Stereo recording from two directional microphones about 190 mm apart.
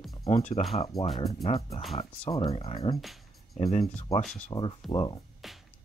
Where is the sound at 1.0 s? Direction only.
Centre (ahead or behind).